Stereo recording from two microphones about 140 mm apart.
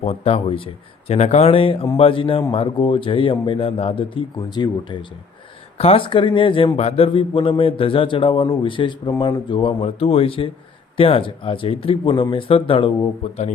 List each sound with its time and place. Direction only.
0.0 s a man's voice: 45° left (ahead or behind); by 4.9 s 30° left (ahead or behind)
5.7 s a man's voice: 45° left (ahead or behind)